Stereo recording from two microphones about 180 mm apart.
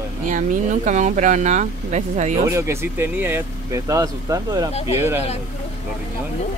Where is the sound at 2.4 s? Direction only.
15° right (ahead or behind).